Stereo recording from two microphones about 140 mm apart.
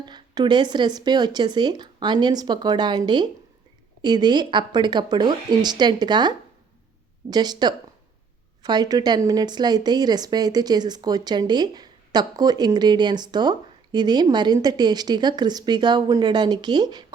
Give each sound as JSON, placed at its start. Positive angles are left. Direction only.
{"t": 0.0, "sound": "speech", "side_deg": -30}